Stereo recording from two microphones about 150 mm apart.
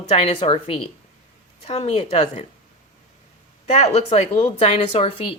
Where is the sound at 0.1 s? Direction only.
40° left (ahead or behind).